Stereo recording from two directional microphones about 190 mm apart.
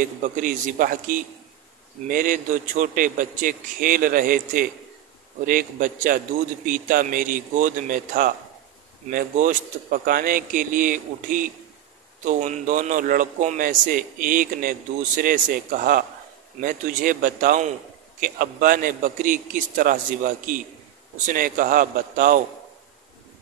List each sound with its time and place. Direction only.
0.0 s a man's voice: 45° right (ahead or behind)
21.3 s a man's voice: 45° right (ahead or behind)